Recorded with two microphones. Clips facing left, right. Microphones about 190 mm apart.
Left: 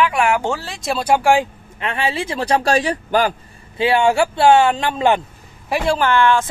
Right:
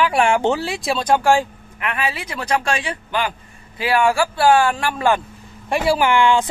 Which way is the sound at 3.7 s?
25° left (ahead or behind).